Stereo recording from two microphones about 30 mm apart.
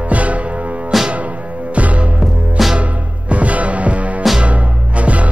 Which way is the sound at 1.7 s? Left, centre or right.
Right.